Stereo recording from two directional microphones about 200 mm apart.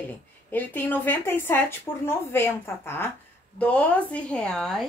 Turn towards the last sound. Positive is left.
turn(degrees=0)  # may be behind; listen again after turning